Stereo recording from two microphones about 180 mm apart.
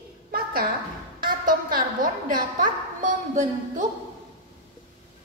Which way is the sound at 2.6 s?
45° right (ahead or behind).